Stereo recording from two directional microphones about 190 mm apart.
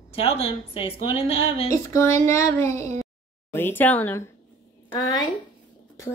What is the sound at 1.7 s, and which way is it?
A woman's voice, 15° left (ahead or behind).